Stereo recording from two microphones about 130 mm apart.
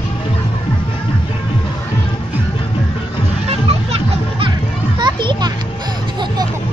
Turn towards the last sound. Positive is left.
turn(degrees=-35)  # may be behind; listen again after turning